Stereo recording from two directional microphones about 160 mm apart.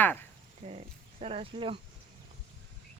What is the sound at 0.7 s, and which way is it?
Speech, 40° right (ahead or behind).